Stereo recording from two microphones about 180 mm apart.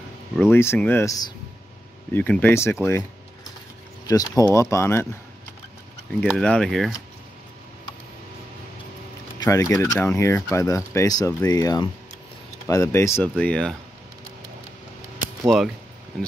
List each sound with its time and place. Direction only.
0.5 s speech: 15° left (ahead or behind)
4.1 s speech: 20° left (ahead or behind)
6.2 s speech: 5° left (ahead or behind)
9.4 s speech: 20° left (ahead or behind)
15.4 s speech: centre (ahead or behind)